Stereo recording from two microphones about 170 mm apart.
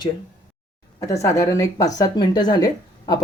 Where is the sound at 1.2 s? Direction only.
20° left (ahead or behind).